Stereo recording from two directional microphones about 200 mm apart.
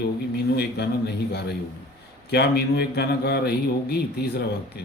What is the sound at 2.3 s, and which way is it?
A man's voice, 55° left (ahead or behind).